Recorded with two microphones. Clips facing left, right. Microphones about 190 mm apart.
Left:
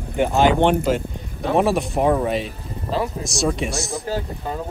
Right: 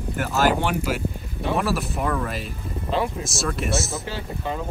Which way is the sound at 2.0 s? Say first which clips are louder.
Left 11 dB; 40° left (ahead or behind).